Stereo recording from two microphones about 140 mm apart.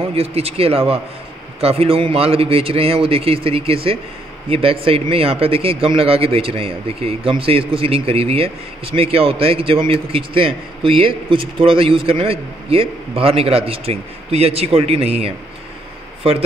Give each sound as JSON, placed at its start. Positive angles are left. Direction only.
{"t": 0.1, "sound": "a man's voice", "side_deg": -45}